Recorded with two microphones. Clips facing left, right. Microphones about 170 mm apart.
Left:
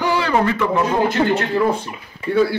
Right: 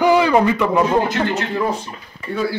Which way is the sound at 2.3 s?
65° left (ahead or behind).